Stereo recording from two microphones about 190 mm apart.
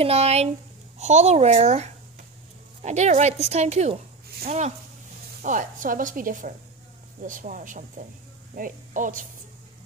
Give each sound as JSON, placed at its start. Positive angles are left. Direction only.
{"t": 0.0, "sound": "a woman's voice", "side_deg": -35}